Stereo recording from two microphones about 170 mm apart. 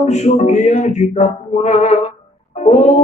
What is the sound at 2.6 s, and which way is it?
Speech, 40° left (ahead or behind).